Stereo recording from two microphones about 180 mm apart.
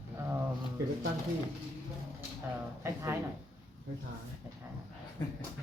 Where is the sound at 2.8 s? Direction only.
15° right (ahead or behind).